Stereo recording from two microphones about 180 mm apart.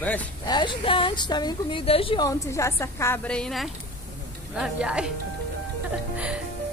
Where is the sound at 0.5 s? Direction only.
25° left (ahead or behind).